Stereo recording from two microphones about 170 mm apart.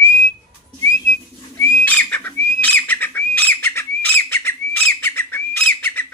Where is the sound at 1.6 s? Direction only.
10° left (ahead or behind).